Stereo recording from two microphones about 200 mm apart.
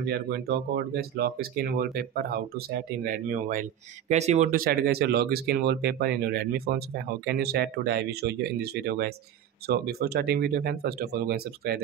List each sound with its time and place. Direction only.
0.1 s speech: 50° right (ahead or behind)